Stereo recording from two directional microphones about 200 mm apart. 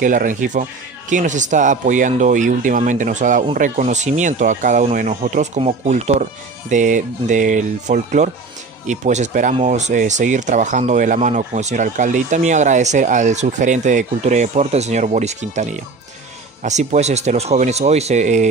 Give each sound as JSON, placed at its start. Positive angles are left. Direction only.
{"t": 0.0, "sound": "speech", "side_deg": -40}